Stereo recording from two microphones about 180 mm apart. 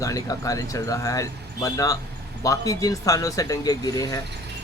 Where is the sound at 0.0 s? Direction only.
20° left (ahead or behind).